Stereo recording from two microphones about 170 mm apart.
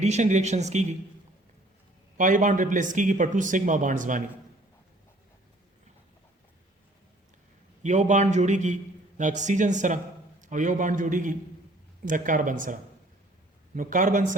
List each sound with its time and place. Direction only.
0.0 s speech: 45° right (ahead or behind)
2.1 s a man's voice: 50° right (ahead or behind)
7.8 s a man's voice: 45° right (ahead or behind)